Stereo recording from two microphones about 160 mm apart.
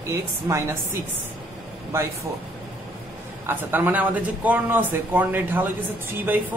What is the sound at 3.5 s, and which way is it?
Speech, 15° right (ahead or behind).